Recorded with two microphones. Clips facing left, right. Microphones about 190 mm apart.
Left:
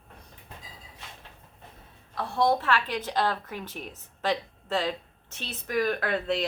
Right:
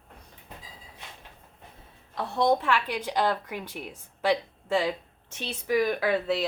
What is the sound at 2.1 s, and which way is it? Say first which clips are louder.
A woman's voice: right 1 dB; 20° right (ahead or behind).